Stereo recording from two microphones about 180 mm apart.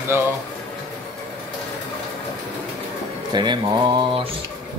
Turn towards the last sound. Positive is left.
turn(degrees=-25)  # may be behind; listen again after turning